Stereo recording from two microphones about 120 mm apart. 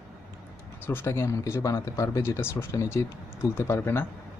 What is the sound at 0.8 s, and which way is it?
Speech, 20° left (ahead or behind).